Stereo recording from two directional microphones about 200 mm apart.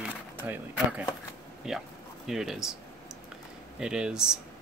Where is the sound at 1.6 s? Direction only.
Centre (ahead or behind).